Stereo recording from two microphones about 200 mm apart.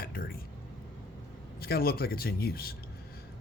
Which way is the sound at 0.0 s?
45° left (ahead or behind).